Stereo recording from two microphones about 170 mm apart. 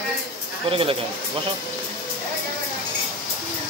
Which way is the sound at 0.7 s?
30° right (ahead or behind).